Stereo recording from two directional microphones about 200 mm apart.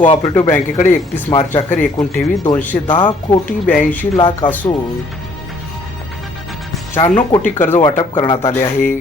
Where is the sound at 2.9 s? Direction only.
25° left (ahead or behind).